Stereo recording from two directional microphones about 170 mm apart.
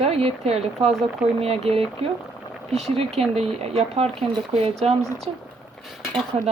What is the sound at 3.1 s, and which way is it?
Speech, 35° right (ahead or behind).